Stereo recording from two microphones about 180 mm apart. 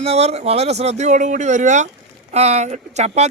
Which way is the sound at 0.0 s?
35° right (ahead or behind).